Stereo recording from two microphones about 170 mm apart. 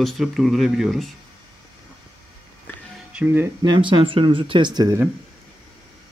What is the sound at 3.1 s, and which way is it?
Speech, 10° right (ahead or behind).